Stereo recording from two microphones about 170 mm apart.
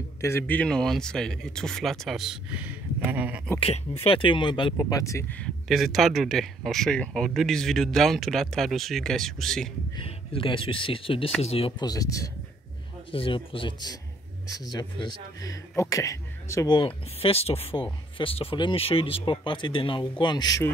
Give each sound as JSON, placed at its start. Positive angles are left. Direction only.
{"t": 0.2, "sound": "speech", "side_deg": 15}
{"t": 3.5, "sound": "speech", "side_deg": 35}
{"t": 5.4, "sound": "speech", "side_deg": 0}
{"t": 9.9, "sound": "speech", "side_deg": 30}
{"t": 11.9, "sound": "speech", "side_deg": 20}
{"t": 13.1, "sound": "speech", "side_deg": 30}
{"t": 16.7, "sound": "speech", "side_deg": 30}